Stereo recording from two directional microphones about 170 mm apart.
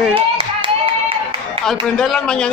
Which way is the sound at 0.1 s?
30° right (ahead or behind).